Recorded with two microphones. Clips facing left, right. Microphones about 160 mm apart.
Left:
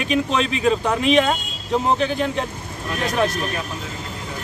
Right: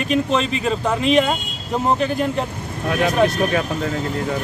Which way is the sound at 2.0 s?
5° right (ahead or behind).